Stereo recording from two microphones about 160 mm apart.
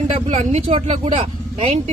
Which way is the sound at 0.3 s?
45° right (ahead or behind).